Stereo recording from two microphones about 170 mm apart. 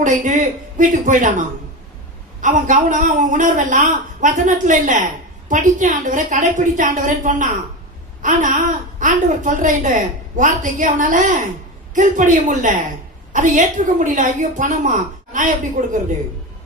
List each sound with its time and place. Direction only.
0.0 s speech: 45° right (ahead or behind)